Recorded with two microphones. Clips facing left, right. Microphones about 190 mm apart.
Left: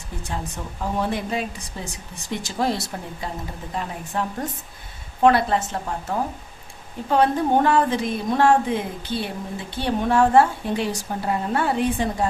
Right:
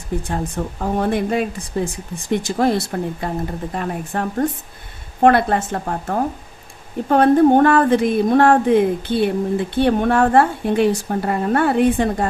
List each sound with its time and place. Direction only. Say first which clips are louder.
0.3 s speech: right 7 dB; 55° right (ahead or behind)